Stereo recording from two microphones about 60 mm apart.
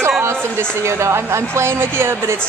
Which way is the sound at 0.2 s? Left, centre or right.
Right.